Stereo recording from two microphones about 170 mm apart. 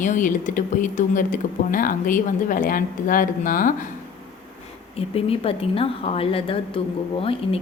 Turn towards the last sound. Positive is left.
turn(degrees=35)  # may be behind; listen again after turning